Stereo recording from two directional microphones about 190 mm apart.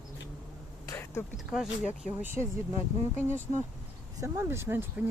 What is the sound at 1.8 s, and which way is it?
Speech, 40° left (ahead or behind).